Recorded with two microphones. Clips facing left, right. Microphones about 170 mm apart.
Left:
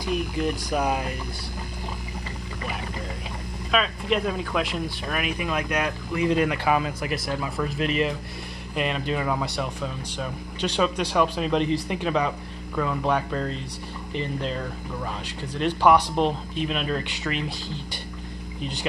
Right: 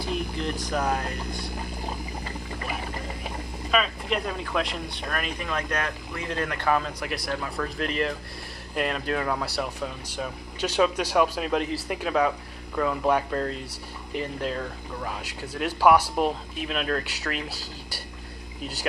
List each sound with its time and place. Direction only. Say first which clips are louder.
0.6 s speech: left 2 dB; 10° left (ahead or behind)
3.7 s speech: left 2 dB; centre (ahead or behind)